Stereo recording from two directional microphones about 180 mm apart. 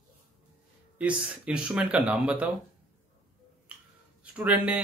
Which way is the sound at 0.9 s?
5° right (ahead or behind).